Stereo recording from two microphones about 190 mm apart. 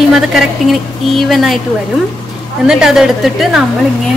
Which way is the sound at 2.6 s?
5° right (ahead or behind).